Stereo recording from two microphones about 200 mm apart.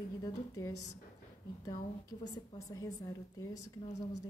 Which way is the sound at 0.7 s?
90° left.